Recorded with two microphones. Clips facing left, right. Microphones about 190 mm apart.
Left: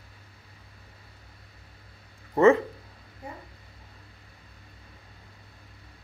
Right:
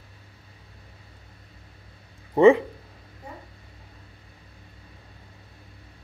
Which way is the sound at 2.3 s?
15° right (ahead or behind).